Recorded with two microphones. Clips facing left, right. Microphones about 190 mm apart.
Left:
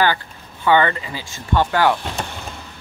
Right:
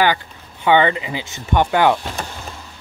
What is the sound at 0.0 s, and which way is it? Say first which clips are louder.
Speech: right 1 dB; 15° right (ahead or behind).